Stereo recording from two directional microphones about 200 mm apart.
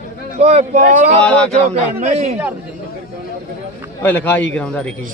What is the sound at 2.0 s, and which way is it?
Speech, 35° right (ahead or behind).